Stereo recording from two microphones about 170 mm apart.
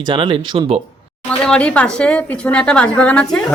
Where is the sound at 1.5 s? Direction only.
5° left (ahead or behind).